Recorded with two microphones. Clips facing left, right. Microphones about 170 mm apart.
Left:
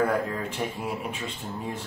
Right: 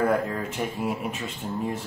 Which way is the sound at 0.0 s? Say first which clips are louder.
Right 2 dB; centre (ahead or behind).